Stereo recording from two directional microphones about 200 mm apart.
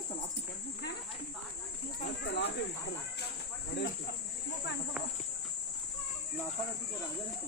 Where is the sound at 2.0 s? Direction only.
55° left (ahead or behind).